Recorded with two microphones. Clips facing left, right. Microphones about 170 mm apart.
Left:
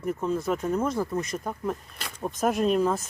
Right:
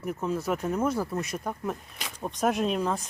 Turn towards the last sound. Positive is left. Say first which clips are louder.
# left 4 dB
turn(degrees=0)  # may be behind; listen again after turning